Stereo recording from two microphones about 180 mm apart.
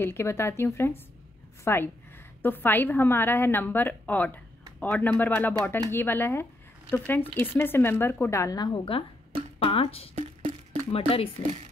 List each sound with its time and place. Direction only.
0.0 s a woman's voice: 15° left (ahead or behind); by 10.0 s 30° left (ahead or behind)
10.1 s a sound: 30° right (ahead or behind)
10.9 s speech: 30° left (ahead or behind)